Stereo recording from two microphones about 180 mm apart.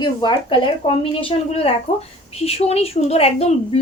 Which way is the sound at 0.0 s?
25° left (ahead or behind).